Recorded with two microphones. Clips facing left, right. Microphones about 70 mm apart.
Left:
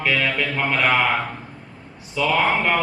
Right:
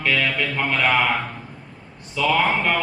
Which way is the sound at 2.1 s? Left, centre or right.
Centre.